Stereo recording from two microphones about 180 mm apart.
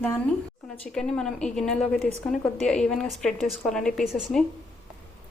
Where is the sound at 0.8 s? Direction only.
5° left (ahead or behind).